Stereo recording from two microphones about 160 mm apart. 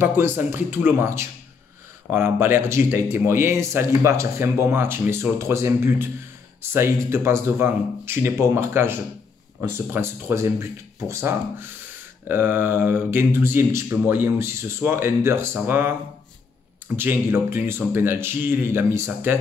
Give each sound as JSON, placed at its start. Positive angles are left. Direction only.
{"t": 0.0, "sound": "speech", "side_deg": -15}